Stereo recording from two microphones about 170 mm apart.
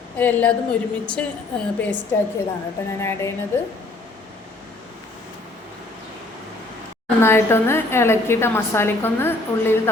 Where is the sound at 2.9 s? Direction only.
15° left (ahead or behind).